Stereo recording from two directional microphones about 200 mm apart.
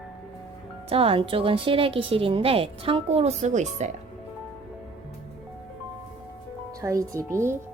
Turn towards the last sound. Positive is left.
turn(degrees=-15)  # may be behind; listen again after turning